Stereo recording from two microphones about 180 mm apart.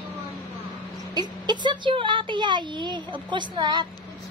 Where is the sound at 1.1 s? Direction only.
25° right (ahead or behind).